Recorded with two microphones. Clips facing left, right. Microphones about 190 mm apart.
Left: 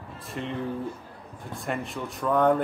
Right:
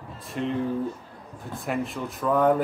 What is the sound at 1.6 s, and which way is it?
Speech, centre (ahead or behind).